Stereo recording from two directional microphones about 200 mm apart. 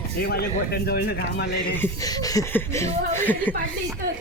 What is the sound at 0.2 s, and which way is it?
Speech, 50° left (ahead or behind).